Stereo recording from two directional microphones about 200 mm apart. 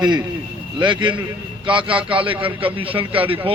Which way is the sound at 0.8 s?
25° right (ahead or behind).